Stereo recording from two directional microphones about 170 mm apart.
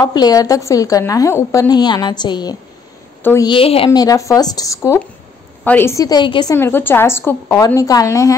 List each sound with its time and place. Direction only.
0.0 s a woman's voice: 25° left (ahead or behind)
3.2 s a woman's voice: 10° left (ahead or behind)
3.4 s a woman's voice: 35° left (ahead or behind)
6.5 s a woman's voice: 10° left (ahead or behind)